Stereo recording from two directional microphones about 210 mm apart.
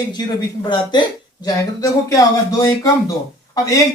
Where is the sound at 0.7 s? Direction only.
20° left (ahead or behind).